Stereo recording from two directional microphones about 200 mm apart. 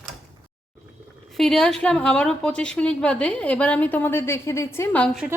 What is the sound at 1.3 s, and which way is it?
A woman's voice, 5° left (ahead or behind).